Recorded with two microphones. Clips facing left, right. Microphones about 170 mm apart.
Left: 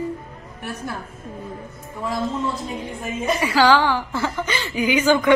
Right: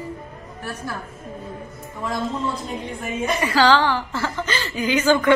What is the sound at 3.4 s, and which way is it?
A woman's voice, 10° left (ahead or behind).